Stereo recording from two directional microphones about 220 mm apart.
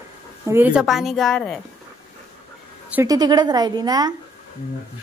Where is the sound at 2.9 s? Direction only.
15° right (ahead or behind).